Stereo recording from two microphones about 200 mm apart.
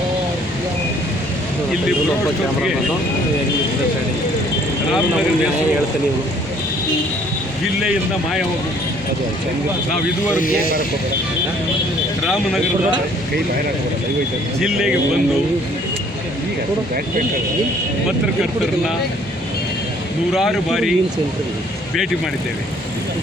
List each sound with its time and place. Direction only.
7.8 s speech: centre (ahead or behind)
10.3 s speech: 45° left (ahead or behind)
12.2 s speech: centre (ahead or behind)
14.6 s speech: centre (ahead or behind)
20.3 s speech: centre (ahead or behind)